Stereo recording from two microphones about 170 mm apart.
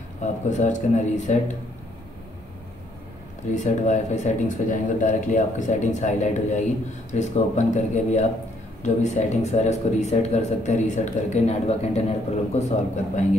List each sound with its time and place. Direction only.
0.2 s speech: 45° left (ahead or behind)
3.5 s speech: 45° left (ahead or behind)